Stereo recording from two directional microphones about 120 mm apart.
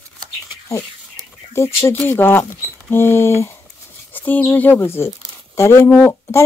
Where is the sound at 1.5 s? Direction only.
20° left (ahead or behind).